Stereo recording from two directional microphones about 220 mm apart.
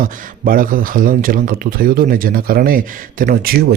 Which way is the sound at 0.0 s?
40° right (ahead or behind).